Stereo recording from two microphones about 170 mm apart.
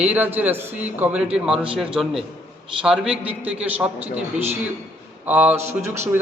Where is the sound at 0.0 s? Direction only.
10° right (ahead or behind).